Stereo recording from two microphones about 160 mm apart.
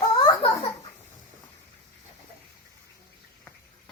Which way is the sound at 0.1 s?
30° left (ahead or behind).